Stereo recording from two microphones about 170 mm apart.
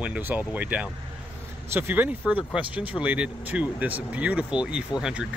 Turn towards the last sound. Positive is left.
turn(degrees=-5)  # may be behind; listen again after turning